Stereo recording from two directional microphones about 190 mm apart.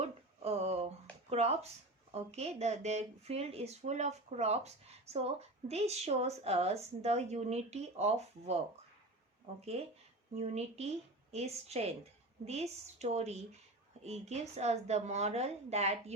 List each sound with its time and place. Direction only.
0.0 s a sound: 30° right (ahead or behind)
1.3 s speech: 35° right (ahead or behind)
9.6 s speech: 30° right (ahead or behind)